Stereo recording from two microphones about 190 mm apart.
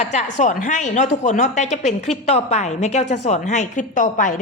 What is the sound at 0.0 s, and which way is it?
A woman's voice, 35° left (ahead or behind).